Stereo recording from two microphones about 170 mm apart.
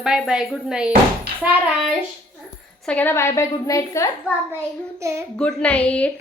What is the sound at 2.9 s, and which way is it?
A woman's voice, 10° left (ahead or behind).